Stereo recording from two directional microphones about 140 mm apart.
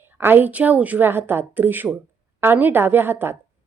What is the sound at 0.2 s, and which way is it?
Speech, 15° right (ahead or behind).